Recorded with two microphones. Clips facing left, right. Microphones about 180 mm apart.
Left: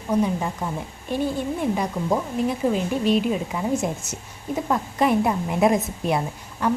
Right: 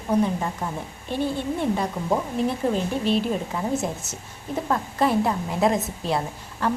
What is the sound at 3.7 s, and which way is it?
Speech, 20° right (ahead or behind).